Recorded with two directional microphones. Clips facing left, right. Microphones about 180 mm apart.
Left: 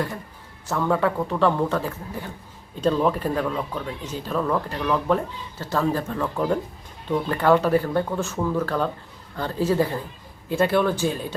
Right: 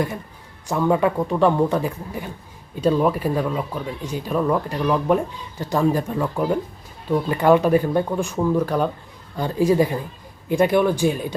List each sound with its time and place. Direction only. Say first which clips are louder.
0.7 s speech: right 3 dB; 15° right (ahead or behind)